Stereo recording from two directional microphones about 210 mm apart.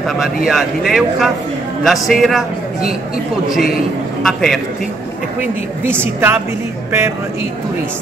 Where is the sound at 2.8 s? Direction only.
45° left (ahead or behind).